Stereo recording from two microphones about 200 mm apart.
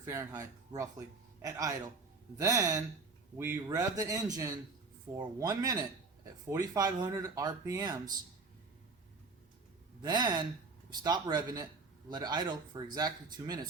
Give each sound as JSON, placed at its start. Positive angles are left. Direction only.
{"t": 0.0, "sound": "speech", "side_deg": -15}
{"t": 10.0, "sound": "speech", "side_deg": -20}